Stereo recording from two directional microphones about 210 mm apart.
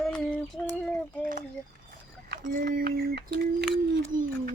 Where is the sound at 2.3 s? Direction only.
45° right (ahead or behind).